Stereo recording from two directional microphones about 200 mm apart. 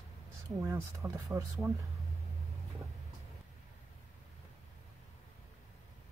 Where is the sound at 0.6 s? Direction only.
15° right (ahead or behind).